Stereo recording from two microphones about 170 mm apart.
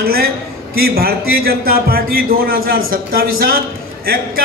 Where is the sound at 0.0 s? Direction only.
65° right (ahead or behind).